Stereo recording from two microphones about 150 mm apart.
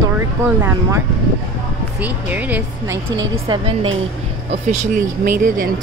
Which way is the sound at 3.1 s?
25° right (ahead or behind).